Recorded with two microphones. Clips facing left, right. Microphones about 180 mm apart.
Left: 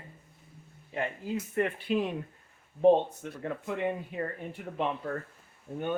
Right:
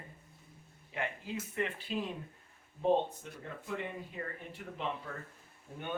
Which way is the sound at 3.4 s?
65° left (ahead or behind).